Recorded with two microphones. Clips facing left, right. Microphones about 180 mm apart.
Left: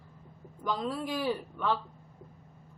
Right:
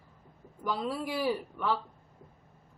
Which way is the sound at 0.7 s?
5° right (ahead or behind).